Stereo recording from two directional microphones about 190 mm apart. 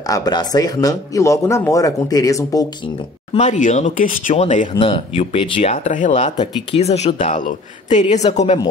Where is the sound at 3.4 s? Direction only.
40° left (ahead or behind).